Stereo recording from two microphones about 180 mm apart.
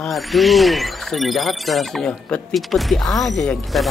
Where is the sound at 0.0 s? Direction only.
Centre (ahead or behind).